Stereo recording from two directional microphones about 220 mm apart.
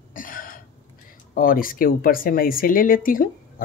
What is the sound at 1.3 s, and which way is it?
Speech, 40° left (ahead or behind).